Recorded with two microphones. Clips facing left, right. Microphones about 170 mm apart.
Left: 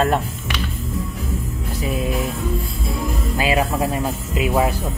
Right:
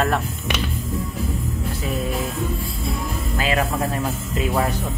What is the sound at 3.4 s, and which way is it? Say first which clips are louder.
Music: left 3 dB; 15° left (ahead or behind).